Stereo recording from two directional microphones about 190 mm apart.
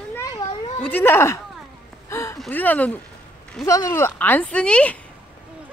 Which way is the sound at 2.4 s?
10° left (ahead or behind).